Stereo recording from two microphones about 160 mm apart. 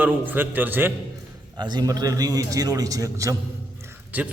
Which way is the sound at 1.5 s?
25° right (ahead or behind).